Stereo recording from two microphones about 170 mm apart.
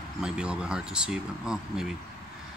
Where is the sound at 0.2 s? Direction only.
5° right (ahead or behind).